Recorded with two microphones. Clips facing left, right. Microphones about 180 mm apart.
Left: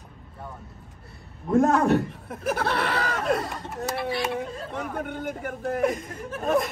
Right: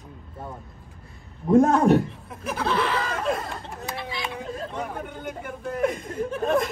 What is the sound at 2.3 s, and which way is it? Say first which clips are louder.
Speech: left 2 dB; 70° left (ahead or behind).